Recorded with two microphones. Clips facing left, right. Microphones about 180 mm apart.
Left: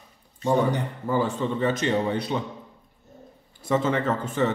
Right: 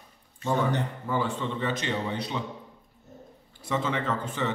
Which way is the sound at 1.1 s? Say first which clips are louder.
Left 6 dB; 40° left (ahead or behind).